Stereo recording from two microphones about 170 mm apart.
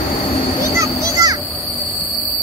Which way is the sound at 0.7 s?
20° right (ahead or behind).